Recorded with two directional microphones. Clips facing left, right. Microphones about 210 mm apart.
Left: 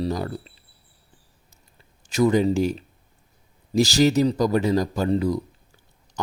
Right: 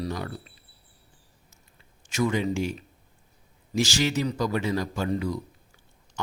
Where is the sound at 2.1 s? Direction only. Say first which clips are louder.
Left 7 dB; 35° left (ahead or behind).